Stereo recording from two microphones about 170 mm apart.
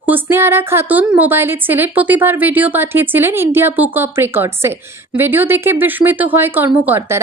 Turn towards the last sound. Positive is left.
turn(degrees=-10)  # may be behind; listen again after turning